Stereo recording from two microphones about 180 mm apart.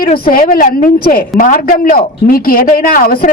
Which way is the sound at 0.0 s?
55° left (ahead or behind).